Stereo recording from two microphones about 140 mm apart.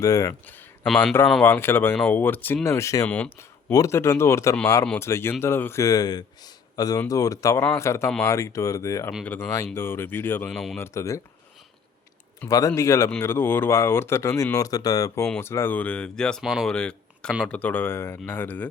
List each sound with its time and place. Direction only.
0.0 s a man's voice: 25° left (ahead or behind)
0.9 s a man's voice: 10° left (ahead or behind)
3.1 s speech: 10° left (ahead or behind)
3.7 s a man's voice: 20° left (ahead or behind)
10.5 s speech: centre (ahead or behind)
10.8 s a man's voice: 20° left (ahead or behind)
12.5 s a man's voice: 25° left (ahead or behind)